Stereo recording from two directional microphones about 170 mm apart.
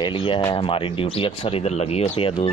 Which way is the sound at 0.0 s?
30° left (ahead or behind).